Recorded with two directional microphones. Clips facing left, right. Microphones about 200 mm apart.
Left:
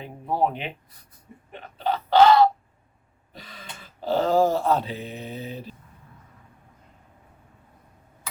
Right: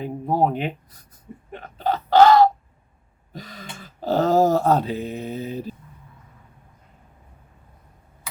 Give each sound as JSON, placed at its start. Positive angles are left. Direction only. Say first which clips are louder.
{"t": 0.0, "sound": "speech", "louder": "right 4 dB", "side_deg": -40}
{"t": 1.5, "sound": "a sound", "louder": "right 2 dB", "side_deg": -45}
{"t": 3.3, "sound": "throat clearing", "louder": "right 6 dB", "side_deg": -40}
{"t": 3.8, "sound": "mantra", "louder": "right 3 dB", "side_deg": -45}